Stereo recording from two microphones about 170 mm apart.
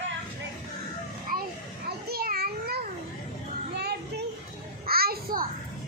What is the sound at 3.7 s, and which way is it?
Music, 70° right (ahead or behind).